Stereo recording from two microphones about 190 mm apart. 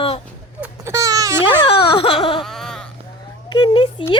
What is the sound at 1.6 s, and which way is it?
Baby cry, 25° left (ahead or behind).